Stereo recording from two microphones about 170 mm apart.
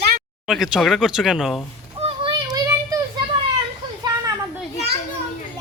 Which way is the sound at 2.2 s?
25° right (ahead or behind).